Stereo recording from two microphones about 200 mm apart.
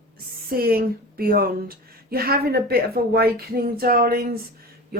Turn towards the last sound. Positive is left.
turn(degrees=-50)  # may be behind; listen again after turning